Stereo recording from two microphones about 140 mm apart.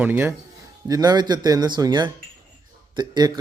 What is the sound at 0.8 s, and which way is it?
Speech, 25° right (ahead or behind).